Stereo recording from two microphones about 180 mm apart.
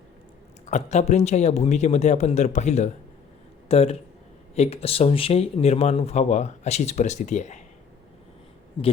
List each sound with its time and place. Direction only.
0.6 s speech: 40° left (ahead or behind)
8.8 s speech: 25° left (ahead or behind)